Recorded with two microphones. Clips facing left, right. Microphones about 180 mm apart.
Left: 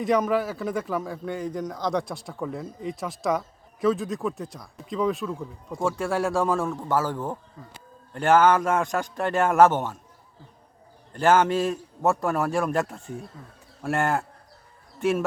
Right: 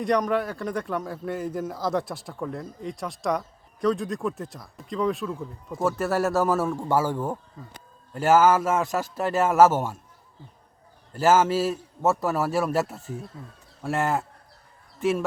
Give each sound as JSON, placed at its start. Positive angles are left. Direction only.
{"t": 0.0, "sound": "a man's voice", "side_deg": 0}
{"t": 11.1, "sound": "a man's voice", "side_deg": -5}